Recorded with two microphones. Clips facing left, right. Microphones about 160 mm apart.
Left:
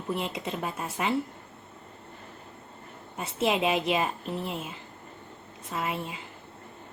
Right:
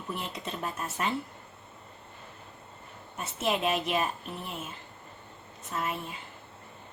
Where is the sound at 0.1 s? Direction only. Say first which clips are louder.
Left 5 dB; 20° left (ahead or behind).